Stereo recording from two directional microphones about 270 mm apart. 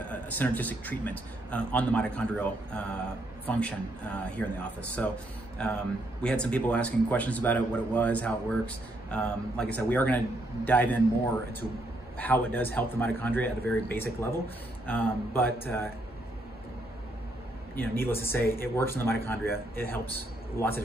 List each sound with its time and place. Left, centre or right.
0.1 s a man's voice: centre
17.7 s speech: centre